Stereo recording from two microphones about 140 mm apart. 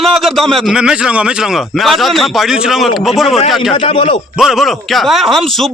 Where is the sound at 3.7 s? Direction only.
40° left (ahead or behind).